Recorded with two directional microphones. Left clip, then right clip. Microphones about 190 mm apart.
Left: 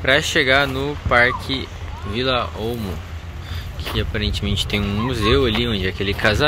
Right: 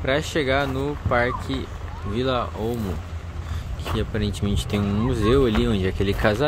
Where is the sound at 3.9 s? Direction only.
25° right (ahead or behind).